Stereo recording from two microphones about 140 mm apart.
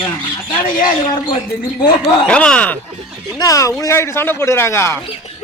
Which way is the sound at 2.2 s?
5° left (ahead or behind).